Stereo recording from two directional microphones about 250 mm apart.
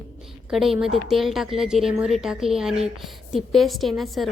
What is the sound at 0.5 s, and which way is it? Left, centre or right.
A woman's voice, centre.